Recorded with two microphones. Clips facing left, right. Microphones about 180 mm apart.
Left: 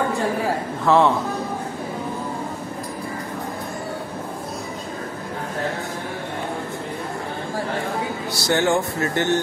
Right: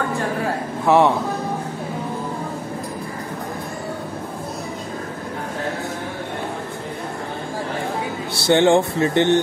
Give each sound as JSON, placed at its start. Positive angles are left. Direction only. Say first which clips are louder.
{"t": 0.8, "sound": "a man's voice", "louder": "right 1 dB", "side_deg": -15}
{"t": 8.5, "sound": "speech", "louder": "right 5 dB", "side_deg": -25}